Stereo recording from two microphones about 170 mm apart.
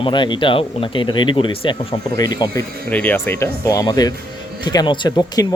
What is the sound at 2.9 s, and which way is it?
Speech, 10° left (ahead or behind).